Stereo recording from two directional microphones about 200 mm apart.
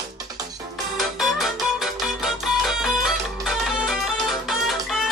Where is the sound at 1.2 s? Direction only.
Centre (ahead or behind).